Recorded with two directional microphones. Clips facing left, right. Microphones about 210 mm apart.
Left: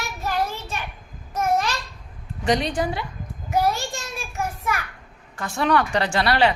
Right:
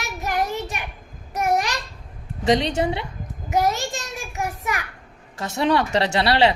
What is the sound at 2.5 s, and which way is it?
Speech, 25° right (ahead or behind).